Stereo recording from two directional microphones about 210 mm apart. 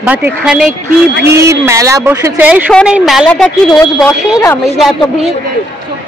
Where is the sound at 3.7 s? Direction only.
15° left (ahead or behind).